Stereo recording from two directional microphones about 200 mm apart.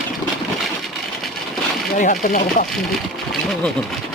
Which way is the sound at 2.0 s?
40° left (ahead or behind).